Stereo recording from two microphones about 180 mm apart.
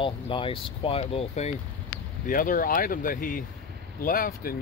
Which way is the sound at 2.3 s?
50° left (ahead or behind).